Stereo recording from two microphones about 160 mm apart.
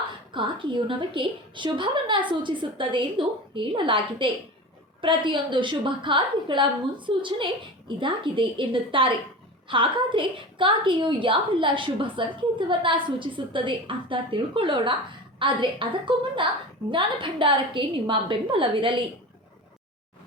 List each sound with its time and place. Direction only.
0.3 s a woman's voice: 30° right (ahead or behind)